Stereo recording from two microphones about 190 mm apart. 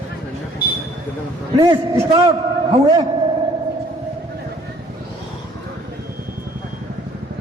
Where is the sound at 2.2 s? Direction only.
25° right (ahead or behind).